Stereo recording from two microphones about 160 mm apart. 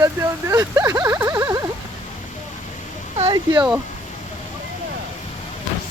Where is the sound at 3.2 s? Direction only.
35° right (ahead or behind).